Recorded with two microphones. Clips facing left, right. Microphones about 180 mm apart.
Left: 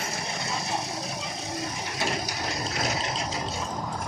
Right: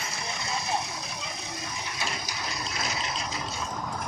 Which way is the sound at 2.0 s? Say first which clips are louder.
Left 7 dB; 45° left (ahead or behind).